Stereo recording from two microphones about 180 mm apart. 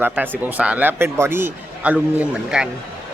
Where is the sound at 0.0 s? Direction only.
10° right (ahead or behind).